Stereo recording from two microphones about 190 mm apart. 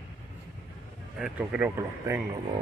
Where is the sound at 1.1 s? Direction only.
5° right (ahead or behind).